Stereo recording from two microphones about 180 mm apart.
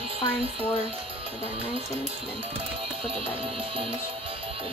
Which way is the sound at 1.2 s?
30° right (ahead or behind).